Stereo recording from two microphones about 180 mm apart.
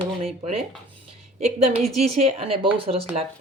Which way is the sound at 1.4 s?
35° right (ahead or behind).